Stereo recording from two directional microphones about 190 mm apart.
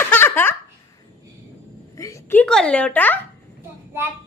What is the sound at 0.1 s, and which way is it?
Laughter, 10° left (ahead or behind).